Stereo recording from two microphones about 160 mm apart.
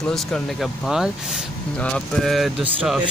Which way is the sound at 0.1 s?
Centre (ahead or behind).